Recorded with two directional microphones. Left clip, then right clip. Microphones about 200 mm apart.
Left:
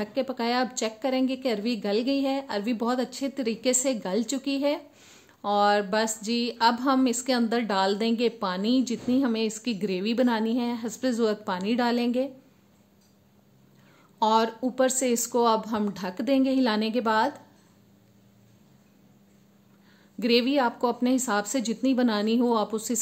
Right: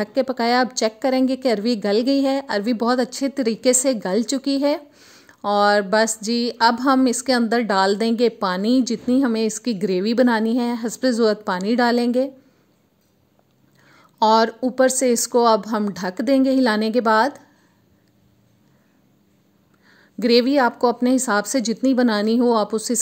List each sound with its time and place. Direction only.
0.0 s a woman's voice: 40° right (ahead or behind)
13.8 s a woman's voice: 35° right (ahead or behind)
19.9 s a woman's voice: 35° right (ahead or behind)